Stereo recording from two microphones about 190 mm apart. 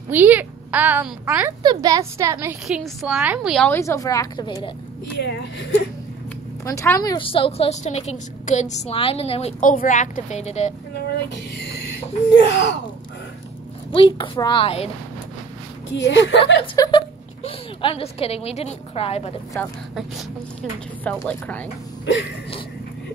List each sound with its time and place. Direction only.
0.1 s a woman's voice: 10° right (ahead or behind)
1.6 s a woman's voice: 20° right (ahead or behind)
2.8 s a woman's voice: centre (ahead or behind); by 4.6 s 20° left (ahead or behind)
5.1 s speech: 60° left (ahead or behind)
6.6 s a woman's voice: 15° left (ahead or behind); by 10.7 s 35° left (ahead or behind)
11.1 s speech: 65° left (ahead or behind)
13.9 s a woman's voice: 25° left (ahead or behind)
15.9 s a woman's voice: 75° left (ahead or behind)
16.7 s a woman's voice: 20° left (ahead or behind)
17.4 s a woman's voice: 30° left (ahead or behind)
21.0 s a woman's voice: 10° left (ahead or behind)